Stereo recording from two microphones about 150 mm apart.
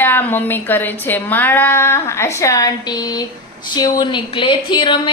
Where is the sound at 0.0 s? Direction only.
15° left (ahead or behind).